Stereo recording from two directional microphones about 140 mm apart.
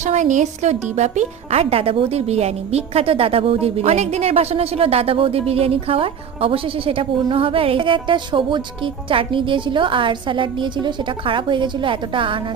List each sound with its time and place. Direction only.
0.0 s speech: 60° right (ahead or behind); by 12.4 s 35° right (ahead or behind)